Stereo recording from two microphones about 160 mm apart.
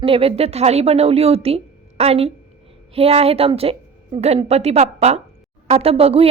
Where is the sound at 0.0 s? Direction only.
35° right (ahead or behind).